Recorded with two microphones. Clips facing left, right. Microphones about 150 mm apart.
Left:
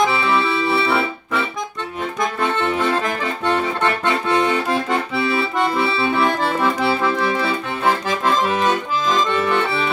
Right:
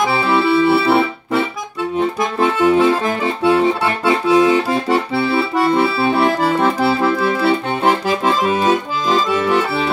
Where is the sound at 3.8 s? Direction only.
5° right (ahead or behind).